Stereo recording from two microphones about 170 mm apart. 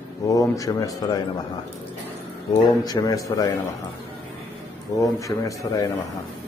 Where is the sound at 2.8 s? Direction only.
20° left (ahead or behind).